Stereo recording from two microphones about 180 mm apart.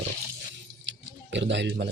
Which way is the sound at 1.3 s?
80° right.